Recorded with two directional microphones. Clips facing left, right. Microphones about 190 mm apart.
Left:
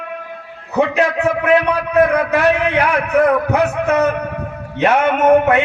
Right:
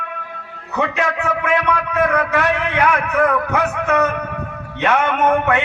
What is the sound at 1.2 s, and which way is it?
Speech, 35° left (ahead or behind).